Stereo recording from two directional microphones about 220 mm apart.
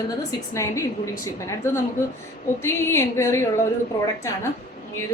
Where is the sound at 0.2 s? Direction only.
15° left (ahead or behind).